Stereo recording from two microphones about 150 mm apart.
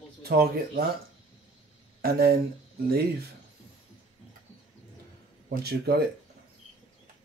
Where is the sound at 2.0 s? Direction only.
90° right.